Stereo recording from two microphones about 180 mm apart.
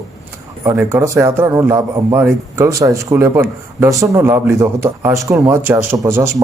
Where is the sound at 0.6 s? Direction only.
15° right (ahead or behind).